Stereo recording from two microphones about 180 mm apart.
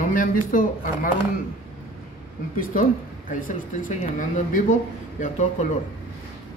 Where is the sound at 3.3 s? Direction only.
45° left (ahead or behind).